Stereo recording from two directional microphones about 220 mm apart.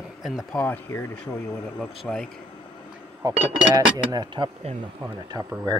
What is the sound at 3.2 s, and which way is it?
Speech, 15° right (ahead or behind).